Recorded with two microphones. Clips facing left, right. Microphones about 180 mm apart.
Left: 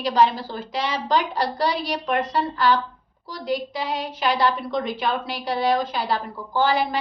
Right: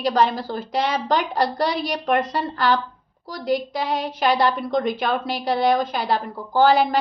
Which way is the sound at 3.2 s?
45° right (ahead or behind).